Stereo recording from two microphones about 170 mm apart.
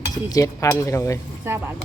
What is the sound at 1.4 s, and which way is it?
Speech, 15° right (ahead or behind).